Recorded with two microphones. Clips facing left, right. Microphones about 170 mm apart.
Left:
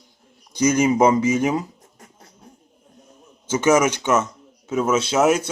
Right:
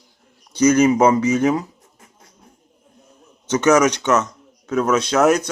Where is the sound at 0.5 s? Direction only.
10° left (ahead or behind).